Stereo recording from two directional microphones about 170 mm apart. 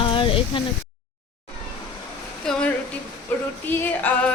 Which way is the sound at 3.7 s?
10° left (ahead or behind).